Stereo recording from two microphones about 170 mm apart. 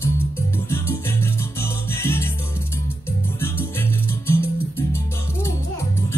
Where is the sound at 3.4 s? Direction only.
15° left (ahead or behind).